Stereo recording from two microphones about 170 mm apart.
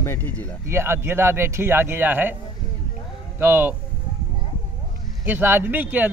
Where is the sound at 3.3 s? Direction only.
10° right (ahead or behind).